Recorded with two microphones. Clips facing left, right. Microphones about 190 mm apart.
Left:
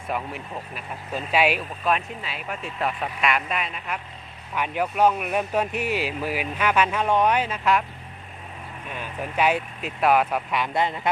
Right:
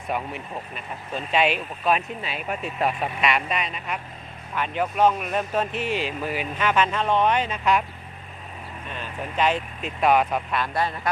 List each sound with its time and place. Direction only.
0.1 s speech: centre (ahead or behind)
2.2 s speech: 20° right (ahead or behind)
3.2 s speech: centre (ahead or behind)
8.9 s speech: 10° left (ahead or behind)
10.6 s a man's voice: 20° left (ahead or behind)